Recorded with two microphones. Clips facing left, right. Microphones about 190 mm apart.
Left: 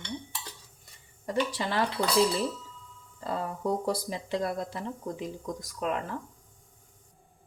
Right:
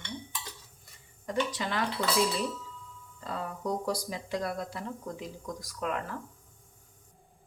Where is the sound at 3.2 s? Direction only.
30° left (ahead or behind).